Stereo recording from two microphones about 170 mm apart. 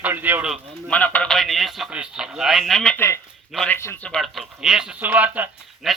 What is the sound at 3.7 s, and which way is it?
Speech, 15° left (ahead or behind).